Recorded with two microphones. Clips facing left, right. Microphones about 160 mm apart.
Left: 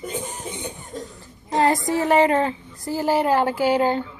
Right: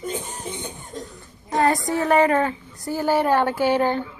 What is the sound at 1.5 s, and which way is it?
Speech, 25° left (ahead or behind).